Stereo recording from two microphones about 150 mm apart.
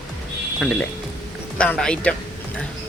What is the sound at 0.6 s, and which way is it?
Speech, 5° left (ahead or behind).